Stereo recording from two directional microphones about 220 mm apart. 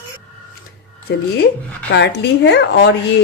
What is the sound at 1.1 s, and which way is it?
A woman's voice, 50° left (ahead or behind).